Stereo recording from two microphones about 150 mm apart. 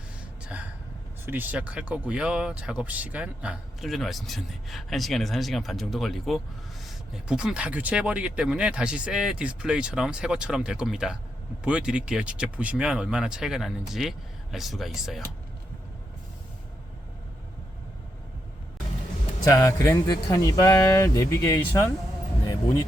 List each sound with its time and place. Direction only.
0.4 s a sound: 10° right (ahead or behind)
1.2 s speech: 15° right (ahead or behind)
19.5 s a man's voice: 20° left (ahead or behind)